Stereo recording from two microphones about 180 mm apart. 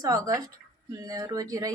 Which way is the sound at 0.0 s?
20° right (ahead or behind).